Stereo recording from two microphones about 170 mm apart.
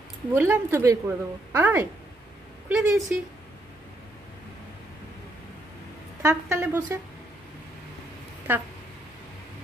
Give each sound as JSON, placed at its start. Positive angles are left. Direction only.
{"t": 0.3, "sound": "a woman's voice", "side_deg": -15}
{"t": 6.2, "sound": "a woman's voice", "side_deg": -15}
{"t": 8.5, "sound": "a woman's voice", "side_deg": -10}